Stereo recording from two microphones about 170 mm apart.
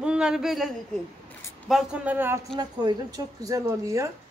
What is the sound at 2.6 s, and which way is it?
A woman's voice, 25° right (ahead or behind).